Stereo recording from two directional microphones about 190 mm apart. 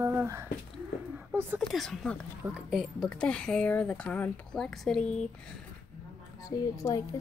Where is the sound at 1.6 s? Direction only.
Centre (ahead or behind).